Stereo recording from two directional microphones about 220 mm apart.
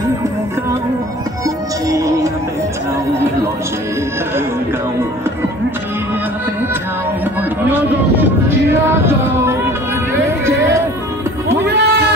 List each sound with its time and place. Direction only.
1.9 s music: 15° right (ahead or behind)
7.6 s speech: 10° right (ahead or behind)
11.6 s bleat: 50° right (ahead or behind)